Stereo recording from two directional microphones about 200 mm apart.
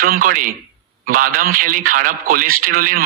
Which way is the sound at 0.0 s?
45° right (ahead or behind).